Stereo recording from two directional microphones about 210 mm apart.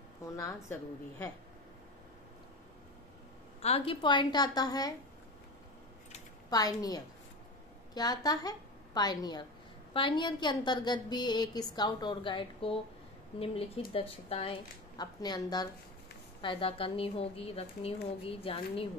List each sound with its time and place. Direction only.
0.4 s a woman's voice: 15° left (ahead or behind)
3.6 s a woman's voice: 25° left (ahead or behind)
6.5 s a woman's voice: 20° left (ahead or behind)
13.9 s a woman's voice: 25° left (ahead or behind)